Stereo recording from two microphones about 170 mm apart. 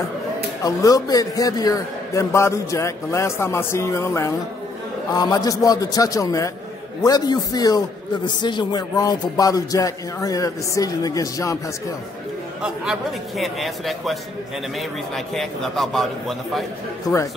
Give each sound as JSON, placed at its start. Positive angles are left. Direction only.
{"t": 0.7, "sound": "a man's voice", "side_deg": 20}
{"t": 13.4, "sound": "a man's voice", "side_deg": 0}